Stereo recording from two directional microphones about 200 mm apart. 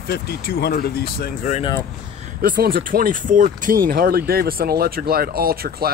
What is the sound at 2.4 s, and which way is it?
Speech, 45° right (ahead or behind).